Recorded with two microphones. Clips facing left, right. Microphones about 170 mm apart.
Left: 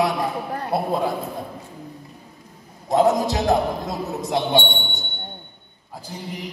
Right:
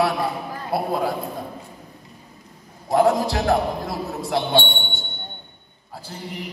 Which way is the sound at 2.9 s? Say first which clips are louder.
Even; 20° left (ahead or behind).